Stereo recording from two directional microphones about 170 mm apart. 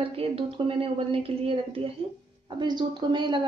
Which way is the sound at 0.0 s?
35° right (ahead or behind).